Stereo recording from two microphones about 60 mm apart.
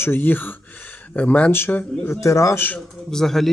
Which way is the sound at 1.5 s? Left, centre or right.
Left.